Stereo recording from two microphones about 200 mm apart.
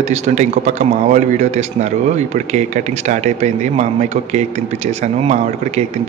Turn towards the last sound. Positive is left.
turn(degrees=-35)  # may be behind; listen again after turning